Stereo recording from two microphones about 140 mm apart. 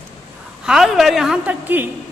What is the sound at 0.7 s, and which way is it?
A woman's voice, centre (ahead or behind).